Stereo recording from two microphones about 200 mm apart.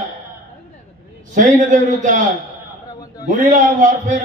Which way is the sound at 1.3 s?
40° right (ahead or behind).